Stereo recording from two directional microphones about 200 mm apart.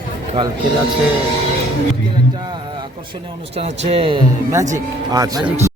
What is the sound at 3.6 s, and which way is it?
Speech, 30° right (ahead or behind).